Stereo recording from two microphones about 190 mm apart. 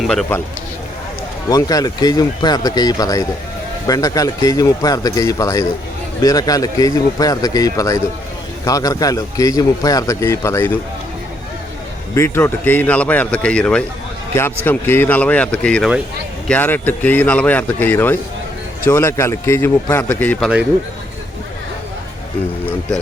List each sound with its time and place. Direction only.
0.0 s a man's voice: 5° left (ahead or behind)
1.5 s a man's voice: 20° left (ahead or behind)
12.1 s a man's voice: 15° left (ahead or behind)